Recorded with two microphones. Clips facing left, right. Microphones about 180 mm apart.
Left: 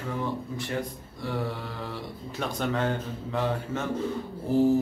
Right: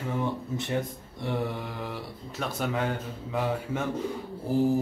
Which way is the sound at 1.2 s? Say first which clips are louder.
Right 1 dB; 20° right (ahead or behind).